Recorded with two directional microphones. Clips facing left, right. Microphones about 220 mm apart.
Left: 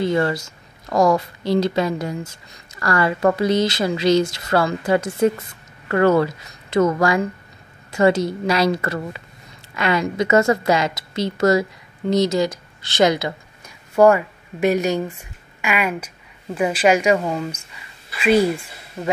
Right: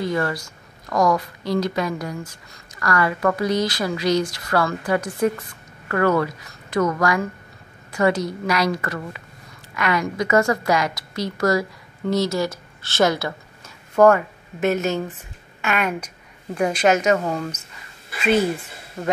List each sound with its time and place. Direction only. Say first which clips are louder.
0.0 s a woman's voice: left 4 dB; 25° left (ahead or behind); by 18.4 s 10° left (ahead or behind)